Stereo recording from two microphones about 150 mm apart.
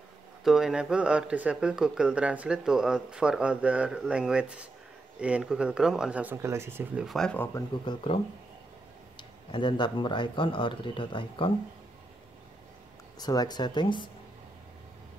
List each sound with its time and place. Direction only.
0.4 s speech: centre (ahead or behind)
7.1 s speech: 5° left (ahead or behind)
7.8 s speech: 35° left (ahead or behind)
13.2 s speech: 25° left (ahead or behind)